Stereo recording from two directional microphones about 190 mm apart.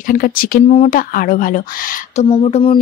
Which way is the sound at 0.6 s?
35° left (ahead or behind).